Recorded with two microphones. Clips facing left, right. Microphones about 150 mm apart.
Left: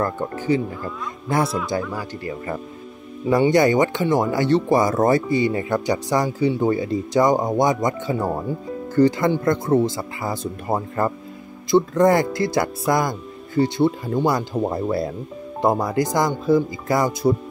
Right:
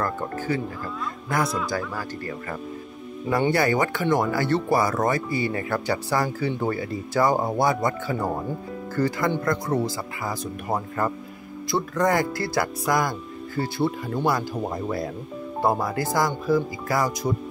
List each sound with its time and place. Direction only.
0.0 s speech: 20° left (ahead or behind)
1.7 s speech: 15° left (ahead or behind)
15.6 s speech: 20° left (ahead or behind)